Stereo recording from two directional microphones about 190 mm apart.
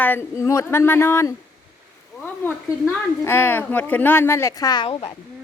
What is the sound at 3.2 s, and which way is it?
Speech, 10° left (ahead or behind).